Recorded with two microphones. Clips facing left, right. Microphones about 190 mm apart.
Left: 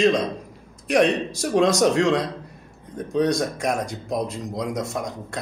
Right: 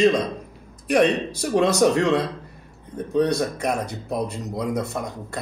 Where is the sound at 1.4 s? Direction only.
5° right (ahead or behind).